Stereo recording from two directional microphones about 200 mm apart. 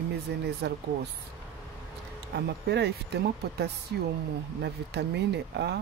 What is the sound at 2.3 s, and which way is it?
Speech, 60° right (ahead or behind).